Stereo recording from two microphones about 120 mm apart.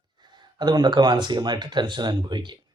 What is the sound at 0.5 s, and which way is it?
Speech, 35° right (ahead or behind).